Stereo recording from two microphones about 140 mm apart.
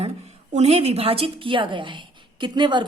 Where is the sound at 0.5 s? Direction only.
50° right (ahead or behind).